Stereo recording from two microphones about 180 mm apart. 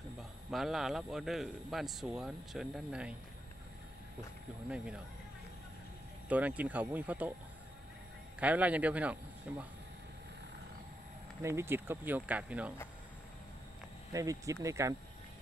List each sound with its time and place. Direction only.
0.2 s a man's voice: centre (ahead or behind)
4.6 s a man's voice: 5° right (ahead or behind)
6.2 s speech: 10° right (ahead or behind)
8.4 s speech: 10° right (ahead or behind)
11.4 s speech: 15° right (ahead or behind)
14.1 s speech: 20° right (ahead or behind)